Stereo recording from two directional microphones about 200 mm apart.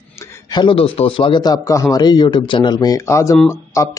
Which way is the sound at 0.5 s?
25° left (ahead or behind).